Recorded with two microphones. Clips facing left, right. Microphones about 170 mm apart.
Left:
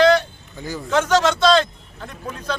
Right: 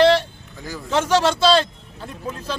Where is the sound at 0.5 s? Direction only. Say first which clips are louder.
Left 3 dB; centre (ahead or behind).